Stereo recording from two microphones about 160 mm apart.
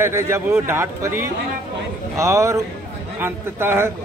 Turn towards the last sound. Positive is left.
turn(degrees=-15)  # may be behind; listen again after turning